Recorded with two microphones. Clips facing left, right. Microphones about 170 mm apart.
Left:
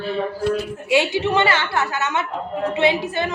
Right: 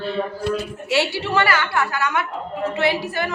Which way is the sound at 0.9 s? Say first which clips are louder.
Left 3 dB; 15° left (ahead or behind).